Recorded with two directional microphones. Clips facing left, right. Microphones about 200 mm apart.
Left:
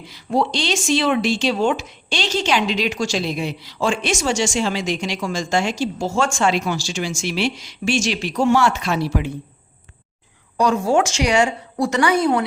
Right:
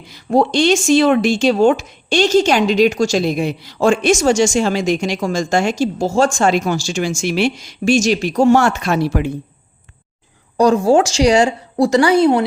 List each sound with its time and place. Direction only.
0.1 s speech: 50° right (ahead or behind)
10.6 s a woman's voice: 35° right (ahead or behind)